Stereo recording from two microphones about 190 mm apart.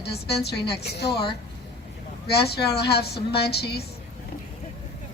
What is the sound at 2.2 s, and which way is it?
Speech, 60° left (ahead or behind).